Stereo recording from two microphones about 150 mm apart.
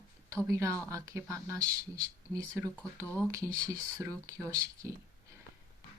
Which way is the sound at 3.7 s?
20° right (ahead or behind).